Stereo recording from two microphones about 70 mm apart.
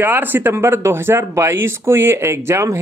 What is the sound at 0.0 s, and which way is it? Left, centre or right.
Speech, right.